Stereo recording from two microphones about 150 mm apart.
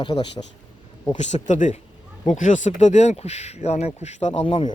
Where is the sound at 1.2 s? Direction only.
50° left (ahead or behind).